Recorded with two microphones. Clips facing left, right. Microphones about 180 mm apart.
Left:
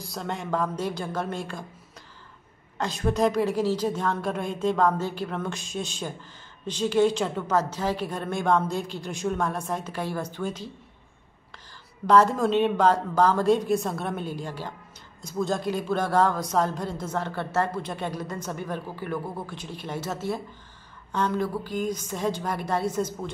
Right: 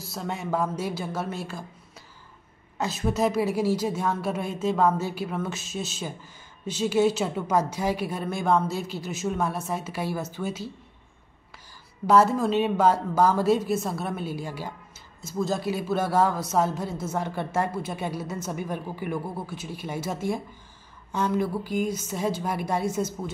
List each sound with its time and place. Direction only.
0.0 s speech: 5° right (ahead or behind)
2.8 s a woman's voice: 5° right (ahead or behind)
12.1 s a woman's voice: 5° right (ahead or behind)